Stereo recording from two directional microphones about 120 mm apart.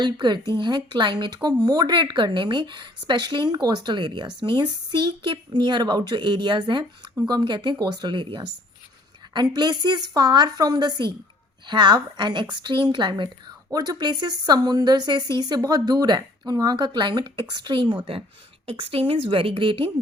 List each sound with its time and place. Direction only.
0.0 s a woman's voice: 40° right (ahead or behind)